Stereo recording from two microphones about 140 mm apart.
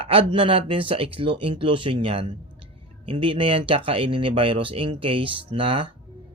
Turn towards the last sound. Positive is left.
turn(degrees=-35)  # may be behind; listen again after turning